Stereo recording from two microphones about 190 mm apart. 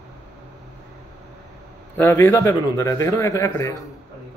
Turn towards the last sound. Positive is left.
turn(degrees=15)  # may be behind; listen again after turning